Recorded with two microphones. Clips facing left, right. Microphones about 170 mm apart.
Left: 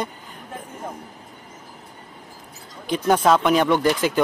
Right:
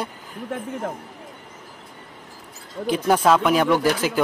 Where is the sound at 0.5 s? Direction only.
80° right.